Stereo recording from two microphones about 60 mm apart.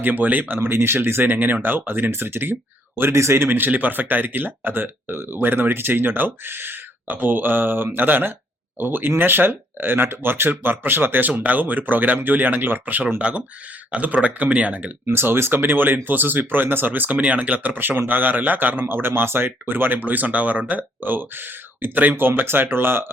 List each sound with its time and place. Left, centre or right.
0.0 s a man's voice: right
3.5 s speech: right
15.0 s speech: right